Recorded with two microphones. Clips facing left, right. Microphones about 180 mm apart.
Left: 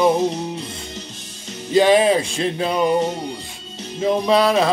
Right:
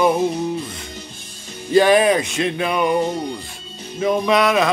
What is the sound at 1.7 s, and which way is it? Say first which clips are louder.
Mantra: even; 25° left (ahead or behind).